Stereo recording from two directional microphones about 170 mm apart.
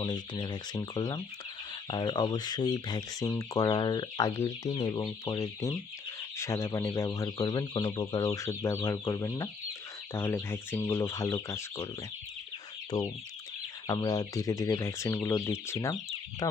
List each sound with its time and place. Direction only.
0.0 s speech: 25° left (ahead or behind)
12.9 s speech: 20° left (ahead or behind)